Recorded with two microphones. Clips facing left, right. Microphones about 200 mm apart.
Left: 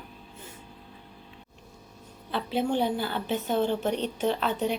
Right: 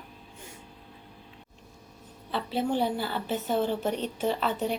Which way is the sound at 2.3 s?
Centre (ahead or behind).